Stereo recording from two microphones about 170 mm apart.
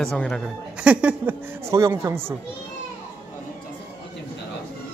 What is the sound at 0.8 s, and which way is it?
Speech, 10° right (ahead or behind).